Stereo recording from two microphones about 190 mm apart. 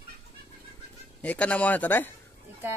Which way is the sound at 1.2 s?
5° left (ahead or behind).